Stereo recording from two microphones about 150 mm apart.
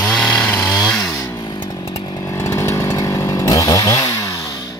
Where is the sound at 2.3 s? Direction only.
20° left (ahead or behind).